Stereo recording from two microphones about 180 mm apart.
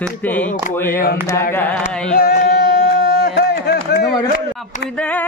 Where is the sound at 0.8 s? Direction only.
50° left (ahead or behind).